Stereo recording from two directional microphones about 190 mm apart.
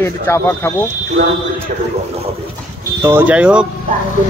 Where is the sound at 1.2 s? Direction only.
65° right (ahead or behind).